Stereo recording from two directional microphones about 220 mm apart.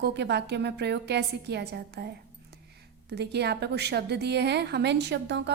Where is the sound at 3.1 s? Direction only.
50° right (ahead or behind).